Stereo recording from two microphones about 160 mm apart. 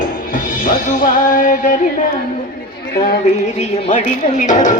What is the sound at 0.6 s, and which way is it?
Music, 60° left (ahead or behind).